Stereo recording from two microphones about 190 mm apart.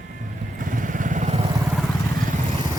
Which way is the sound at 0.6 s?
45° right (ahead or behind).